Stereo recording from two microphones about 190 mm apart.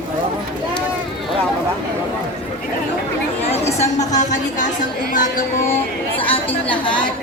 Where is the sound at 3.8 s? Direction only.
40° left (ahead or behind).